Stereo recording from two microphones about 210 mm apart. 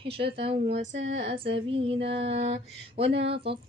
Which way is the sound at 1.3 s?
25° right (ahead or behind).